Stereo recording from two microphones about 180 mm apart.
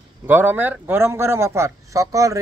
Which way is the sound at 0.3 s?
10° right (ahead or behind).